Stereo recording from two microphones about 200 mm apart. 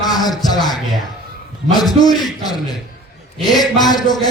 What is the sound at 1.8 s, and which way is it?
Speech, 20° left (ahead or behind).